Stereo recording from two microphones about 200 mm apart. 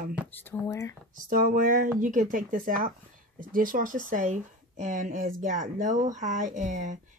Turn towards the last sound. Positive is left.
turn(degrees=-40)  # may be behind; listen again after turning